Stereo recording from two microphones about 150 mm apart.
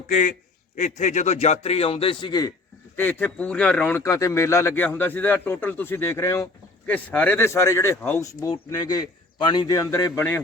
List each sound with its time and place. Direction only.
0.1 s a man's voice: 60° left (ahead or behind); by 2.5 s 30° left (ahead or behind)
2.9 s a man's voice: 10° left (ahead or behind)